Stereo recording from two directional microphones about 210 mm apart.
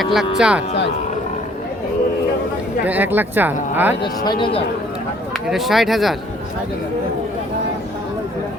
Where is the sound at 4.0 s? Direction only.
20° left (ahead or behind).